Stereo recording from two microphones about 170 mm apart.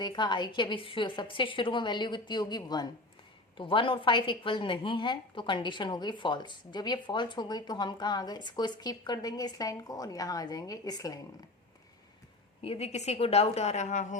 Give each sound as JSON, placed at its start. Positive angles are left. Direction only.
{"t": 0.0, "sound": "a woman's voice", "side_deg": 25}
{"t": 12.6, "sound": "a woman's voice", "side_deg": 35}